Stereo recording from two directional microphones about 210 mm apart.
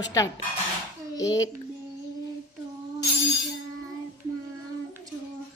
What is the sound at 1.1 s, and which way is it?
Speech, 15° left (ahead or behind).